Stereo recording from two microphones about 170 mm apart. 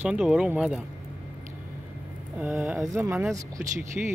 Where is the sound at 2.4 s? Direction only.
10° right (ahead or behind).